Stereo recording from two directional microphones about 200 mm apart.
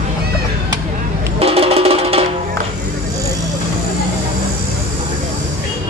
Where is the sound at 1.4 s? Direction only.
30° right (ahead or behind).